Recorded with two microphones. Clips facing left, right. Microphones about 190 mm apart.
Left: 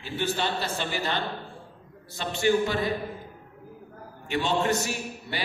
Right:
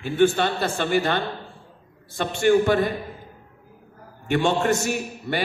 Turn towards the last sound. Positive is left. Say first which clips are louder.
# right 7 dB
turn(degrees=-50)  # may be behind; listen again after turning